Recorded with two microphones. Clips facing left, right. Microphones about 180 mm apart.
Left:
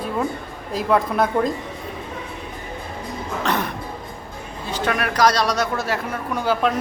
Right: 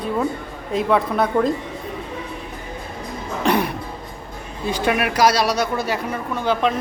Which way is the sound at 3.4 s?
10° right (ahead or behind).